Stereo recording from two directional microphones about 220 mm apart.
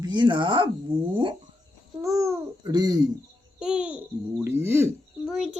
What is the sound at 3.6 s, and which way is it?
A child's voice, 5° right (ahead or behind).